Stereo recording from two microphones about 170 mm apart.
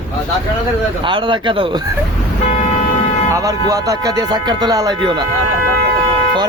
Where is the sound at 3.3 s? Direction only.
20° right (ahead or behind).